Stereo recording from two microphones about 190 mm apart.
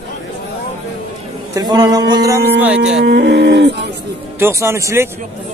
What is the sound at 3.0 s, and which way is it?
Speech, 65° right (ahead or behind).